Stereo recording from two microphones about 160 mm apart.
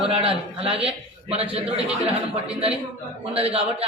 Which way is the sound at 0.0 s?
35° right (ahead or behind).